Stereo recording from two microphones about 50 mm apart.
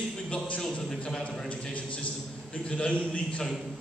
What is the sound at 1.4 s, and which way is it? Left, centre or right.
A man's voice, left.